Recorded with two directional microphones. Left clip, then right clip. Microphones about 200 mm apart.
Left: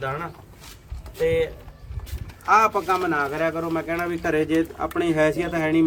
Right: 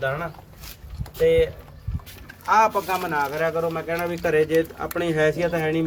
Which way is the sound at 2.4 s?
35° left (ahead or behind).